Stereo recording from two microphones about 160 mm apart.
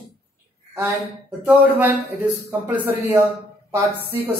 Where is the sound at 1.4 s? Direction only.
10° right (ahead or behind).